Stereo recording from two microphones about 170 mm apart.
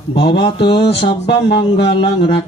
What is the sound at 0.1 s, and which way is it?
Speech, 30° left (ahead or behind).